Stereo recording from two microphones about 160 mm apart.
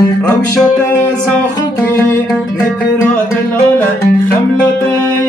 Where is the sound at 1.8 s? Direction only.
15° left (ahead or behind).